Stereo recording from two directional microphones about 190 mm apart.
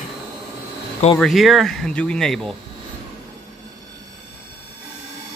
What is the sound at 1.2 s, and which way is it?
Speech, centre (ahead or behind).